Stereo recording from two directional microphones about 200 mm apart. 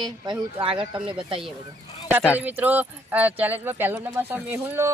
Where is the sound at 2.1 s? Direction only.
10° right (ahead or behind).